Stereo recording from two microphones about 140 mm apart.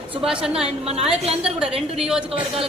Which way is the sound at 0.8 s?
45° right (ahead or behind).